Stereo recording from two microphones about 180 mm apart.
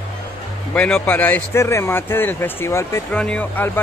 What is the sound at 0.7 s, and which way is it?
Speech, 5° left (ahead or behind).